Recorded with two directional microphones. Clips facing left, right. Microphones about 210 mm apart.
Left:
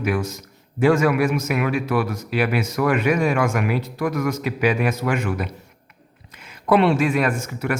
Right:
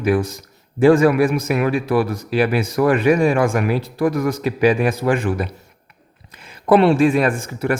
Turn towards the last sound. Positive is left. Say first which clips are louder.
# right 4 dB
turn(degrees=-30)  # may be behind; listen again after turning